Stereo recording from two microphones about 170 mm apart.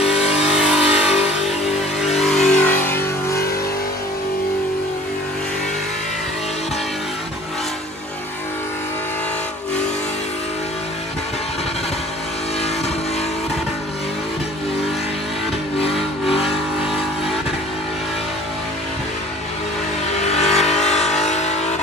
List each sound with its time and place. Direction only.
0.2 s vehicle: 40° left (ahead or behind)
0.6 s vehicle: 5° right (ahead or behind); by 3.3 s 15° left (ahead or behind)
15.8 s vehicle: 35° left (ahead or behind)
20.2 s vehicle: 40° left (ahead or behind)